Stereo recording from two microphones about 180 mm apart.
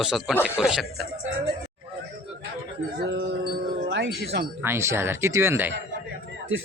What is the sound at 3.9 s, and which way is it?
Speech, 70° right (ahead or behind).